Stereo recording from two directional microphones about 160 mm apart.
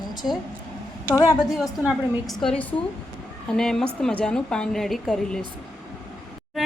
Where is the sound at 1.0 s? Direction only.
20° left (ahead or behind).